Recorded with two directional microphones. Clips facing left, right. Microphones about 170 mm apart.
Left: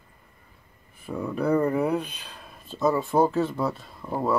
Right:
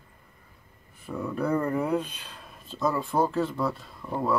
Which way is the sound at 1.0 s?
15° left (ahead or behind).